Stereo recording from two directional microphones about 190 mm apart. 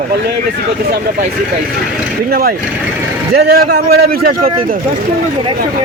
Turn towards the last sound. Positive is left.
turn(degrees=-50)  # may be behind; listen again after turning